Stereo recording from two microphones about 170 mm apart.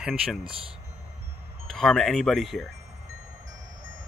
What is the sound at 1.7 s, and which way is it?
Speech, centre (ahead or behind).